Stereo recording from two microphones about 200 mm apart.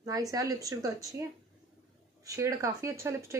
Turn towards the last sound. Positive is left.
turn(degrees=-15)  # may be behind; listen again after turning